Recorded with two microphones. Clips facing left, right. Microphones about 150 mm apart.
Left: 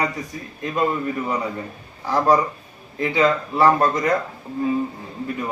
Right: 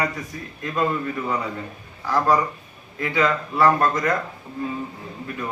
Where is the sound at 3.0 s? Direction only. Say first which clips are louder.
Left 3 dB; 25° left (ahead or behind).